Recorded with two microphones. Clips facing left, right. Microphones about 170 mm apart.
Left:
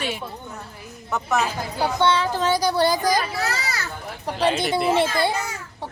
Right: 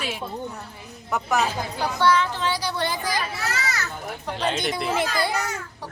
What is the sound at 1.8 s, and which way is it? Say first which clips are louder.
Speech: left 1 dB; 25° left (ahead or behind).